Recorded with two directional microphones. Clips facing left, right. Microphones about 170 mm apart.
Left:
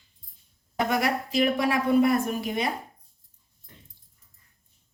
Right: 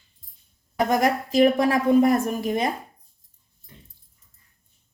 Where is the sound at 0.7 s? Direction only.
40° right (ahead or behind).